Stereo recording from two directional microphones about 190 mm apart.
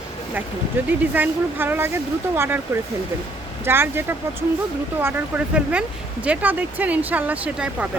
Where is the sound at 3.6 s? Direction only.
10° right (ahead or behind).